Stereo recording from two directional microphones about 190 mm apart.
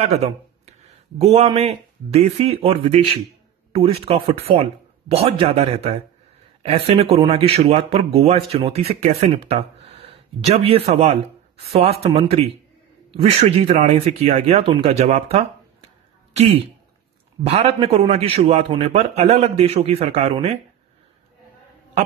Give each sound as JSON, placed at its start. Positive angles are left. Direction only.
{"t": 0.2, "sound": "speech", "side_deg": -35}
{"t": 17.4, "sound": "speech", "side_deg": -35}